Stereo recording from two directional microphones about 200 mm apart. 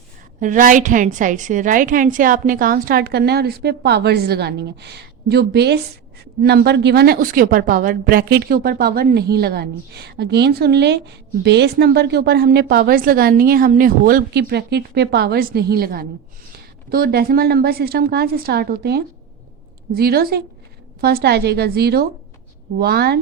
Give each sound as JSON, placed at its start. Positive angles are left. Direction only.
{"t": 0.3, "sound": "speech", "side_deg": -40}